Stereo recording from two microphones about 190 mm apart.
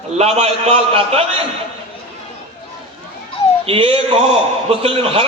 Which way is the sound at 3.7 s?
30° right (ahead or behind).